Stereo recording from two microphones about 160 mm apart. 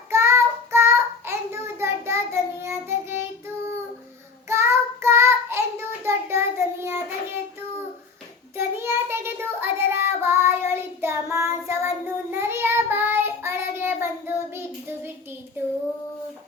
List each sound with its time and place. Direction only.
0.1 s child singing: 15° right (ahead or behind)
8.5 s child singing: 15° right (ahead or behind)